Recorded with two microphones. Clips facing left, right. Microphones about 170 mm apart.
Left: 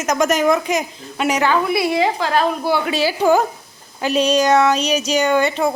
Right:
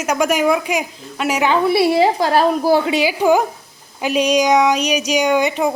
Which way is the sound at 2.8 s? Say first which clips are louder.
Right 1 dB; 20° right (ahead or behind).